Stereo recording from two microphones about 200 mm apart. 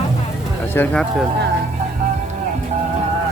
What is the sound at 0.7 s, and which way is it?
Speech, 10° left (ahead or behind).